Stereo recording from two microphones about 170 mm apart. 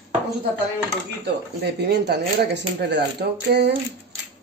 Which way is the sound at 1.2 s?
75° right (ahead or behind).